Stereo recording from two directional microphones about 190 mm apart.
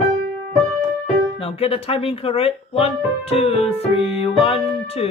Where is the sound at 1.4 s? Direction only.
30° left (ahead or behind).